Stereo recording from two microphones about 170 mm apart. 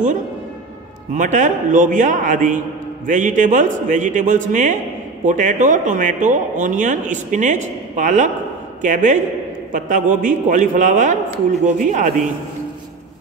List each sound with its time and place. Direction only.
1.1 s speech: 45° right (ahead or behind)